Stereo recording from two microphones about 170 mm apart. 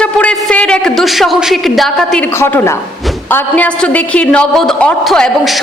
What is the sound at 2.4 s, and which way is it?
A man's voice, 15° left (ahead or behind).